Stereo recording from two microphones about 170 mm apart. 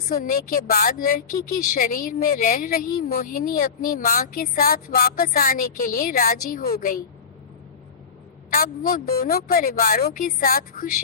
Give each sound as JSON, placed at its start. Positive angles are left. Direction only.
{"t": 0.1, "sound": "a woman's voice", "side_deg": 50}
{"t": 8.4, "sound": "a woman's voice", "side_deg": 60}